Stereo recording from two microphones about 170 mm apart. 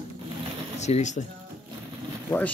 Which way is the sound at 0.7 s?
40° left (ahead or behind).